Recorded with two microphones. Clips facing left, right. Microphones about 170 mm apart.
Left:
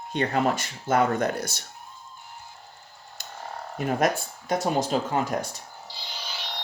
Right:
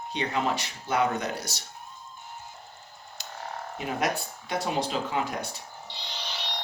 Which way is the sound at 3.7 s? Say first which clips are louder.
Left 5 dB; 45° left (ahead or behind).